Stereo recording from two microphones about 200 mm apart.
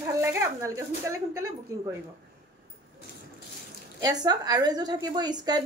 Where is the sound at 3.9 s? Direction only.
20° right (ahead or behind).